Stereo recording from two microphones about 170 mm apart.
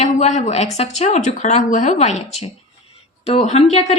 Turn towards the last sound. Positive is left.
turn(degrees=40)  # may be behind; listen again after turning